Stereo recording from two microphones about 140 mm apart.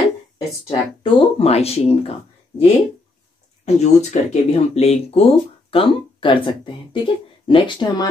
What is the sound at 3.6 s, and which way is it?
Speech, 50° left (ahead or behind).